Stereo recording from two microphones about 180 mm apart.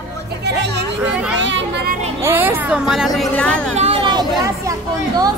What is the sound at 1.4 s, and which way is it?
Speech, 90° right.